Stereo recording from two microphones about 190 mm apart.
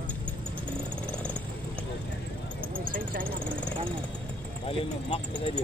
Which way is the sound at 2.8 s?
45° right (ahead or behind).